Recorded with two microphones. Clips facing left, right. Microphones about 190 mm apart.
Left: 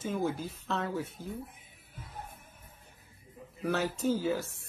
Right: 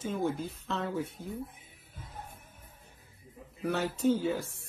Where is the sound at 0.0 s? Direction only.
5° left (ahead or behind).